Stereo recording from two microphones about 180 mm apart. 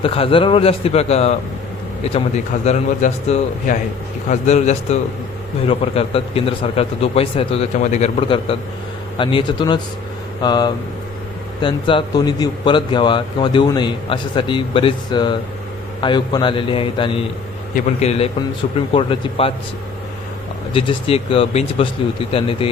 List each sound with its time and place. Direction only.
0.0 s a man's voice: 30° left (ahead or behind)
2.6 s a man's voice: 40° left (ahead or behind)
20.7 s a man's voice: 30° left (ahead or behind)